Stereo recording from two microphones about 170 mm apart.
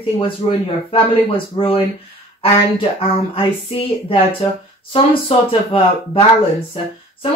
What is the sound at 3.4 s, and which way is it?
Speech, 35° left (ahead or behind).